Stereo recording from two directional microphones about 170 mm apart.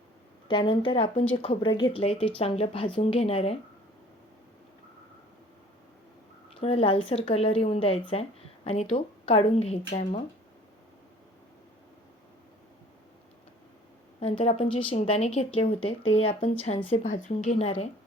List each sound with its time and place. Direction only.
0.4 s a woman's voice: 30° left (ahead or behind)
6.6 s a woman's voice: 35° left (ahead or behind)
14.2 s a woman's voice: 40° left (ahead or behind)